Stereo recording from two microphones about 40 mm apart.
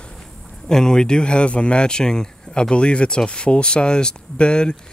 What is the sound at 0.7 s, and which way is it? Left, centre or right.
Speech, centre.